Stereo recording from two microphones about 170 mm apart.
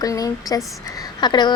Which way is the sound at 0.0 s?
20° left (ahead or behind).